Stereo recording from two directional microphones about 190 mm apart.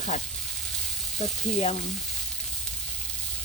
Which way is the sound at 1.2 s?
35° left (ahead or behind).